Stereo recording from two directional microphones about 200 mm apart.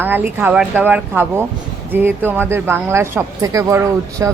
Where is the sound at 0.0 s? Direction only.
10° right (ahead or behind).